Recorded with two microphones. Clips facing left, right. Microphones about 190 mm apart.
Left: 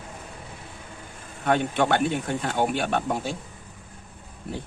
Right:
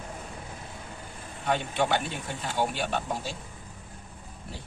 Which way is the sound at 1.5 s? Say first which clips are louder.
Left 5 dB; 55° left (ahead or behind).